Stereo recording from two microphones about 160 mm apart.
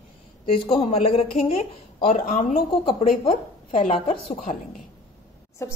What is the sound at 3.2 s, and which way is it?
A woman's voice, 35° left (ahead or behind).